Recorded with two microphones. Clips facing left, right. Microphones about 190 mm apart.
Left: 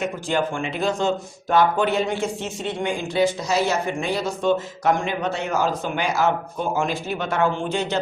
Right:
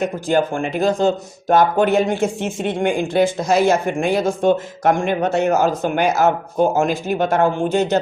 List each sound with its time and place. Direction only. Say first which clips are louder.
0.0 s speech: right 5 dB; 40° right (ahead or behind)